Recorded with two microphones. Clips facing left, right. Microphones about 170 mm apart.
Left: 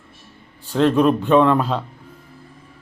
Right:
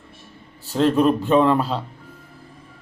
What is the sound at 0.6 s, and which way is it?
Speech, 40° right (ahead or behind).